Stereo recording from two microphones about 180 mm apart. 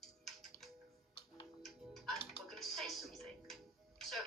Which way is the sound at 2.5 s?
Centre (ahead or behind).